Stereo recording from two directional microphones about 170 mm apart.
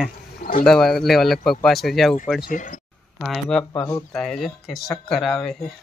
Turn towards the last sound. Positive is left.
turn(degrees=5)  # may be behind; listen again after turning